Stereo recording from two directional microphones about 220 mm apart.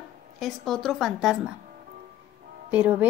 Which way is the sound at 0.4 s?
Centre (ahead or behind).